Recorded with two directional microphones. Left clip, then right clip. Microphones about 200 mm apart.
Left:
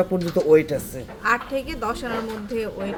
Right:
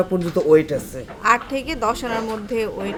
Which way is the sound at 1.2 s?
20° right (ahead or behind).